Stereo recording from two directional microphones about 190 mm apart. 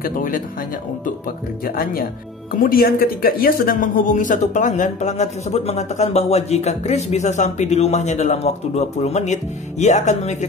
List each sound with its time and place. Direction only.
0.0 s speech: 45° left (ahead or behind)
2.6 s speech: 50° left (ahead or behind)